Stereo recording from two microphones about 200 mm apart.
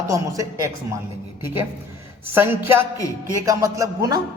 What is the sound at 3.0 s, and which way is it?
Speech, 15° left (ahead or behind).